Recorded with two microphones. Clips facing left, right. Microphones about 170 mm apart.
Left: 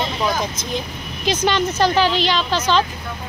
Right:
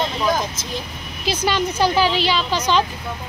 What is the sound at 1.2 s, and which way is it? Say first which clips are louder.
A woman's voice: left 2 dB; 10° right (ahead or behind).